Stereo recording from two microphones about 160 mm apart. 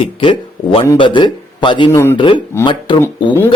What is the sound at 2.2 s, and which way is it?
Speech, 30° left (ahead or behind).